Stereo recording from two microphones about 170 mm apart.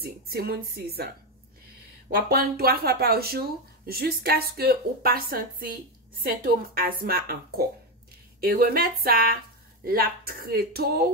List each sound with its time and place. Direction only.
0.0 s speech: 65° right (ahead or behind)